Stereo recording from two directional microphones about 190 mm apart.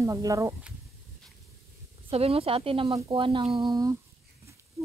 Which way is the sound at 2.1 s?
30° right (ahead or behind).